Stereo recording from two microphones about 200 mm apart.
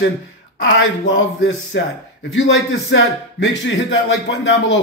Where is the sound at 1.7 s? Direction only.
60° left (ahead or behind).